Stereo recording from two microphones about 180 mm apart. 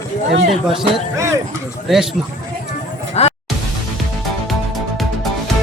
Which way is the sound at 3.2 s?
35° left (ahead or behind).